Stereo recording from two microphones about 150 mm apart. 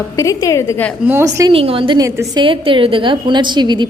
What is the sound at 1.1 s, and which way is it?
Speech, 20° right (ahead or behind).